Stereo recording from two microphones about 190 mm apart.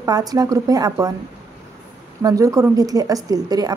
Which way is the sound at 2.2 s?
15° right (ahead or behind).